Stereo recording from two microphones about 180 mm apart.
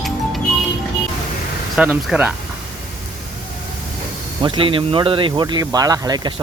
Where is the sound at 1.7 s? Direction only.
5° right (ahead or behind).